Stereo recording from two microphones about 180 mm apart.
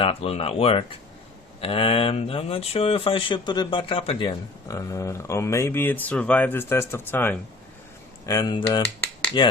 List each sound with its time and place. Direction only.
0.0 s speech: 35° left (ahead or behind)
4.7 s speech: 20° left (ahead or behind)
8.3 s speech: 20° left (ahead or behind)